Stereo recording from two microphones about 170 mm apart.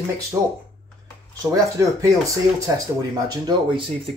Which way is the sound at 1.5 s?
20° right (ahead or behind).